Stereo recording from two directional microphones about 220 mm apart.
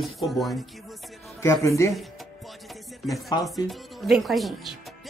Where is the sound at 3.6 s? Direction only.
Centre (ahead or behind).